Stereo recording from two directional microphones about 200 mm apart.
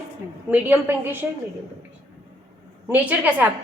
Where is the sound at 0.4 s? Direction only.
10° right (ahead or behind).